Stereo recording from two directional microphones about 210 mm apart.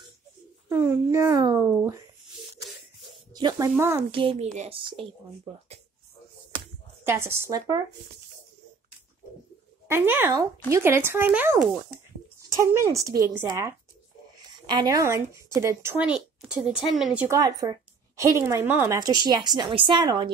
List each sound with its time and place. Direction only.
0.7 s speech: 10° right (ahead or behind)
3.3 s speech: 20° right (ahead or behind)
4.1 s speech: 25° right (ahead or behind)
7.1 s speech: 10° right (ahead or behind)
9.8 s speech: 10° right (ahead or behind)
17.4 s a woman's voice: 20° right (ahead or behind)